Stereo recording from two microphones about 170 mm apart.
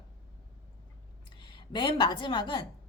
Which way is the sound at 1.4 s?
30° left (ahead or behind).